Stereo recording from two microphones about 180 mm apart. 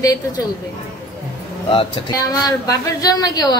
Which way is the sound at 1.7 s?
30° left (ahead or behind).